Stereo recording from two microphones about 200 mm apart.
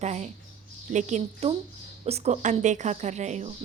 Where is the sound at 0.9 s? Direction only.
35° right (ahead or behind).